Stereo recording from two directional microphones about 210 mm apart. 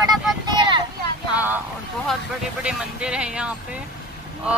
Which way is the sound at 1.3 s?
10° right (ahead or behind).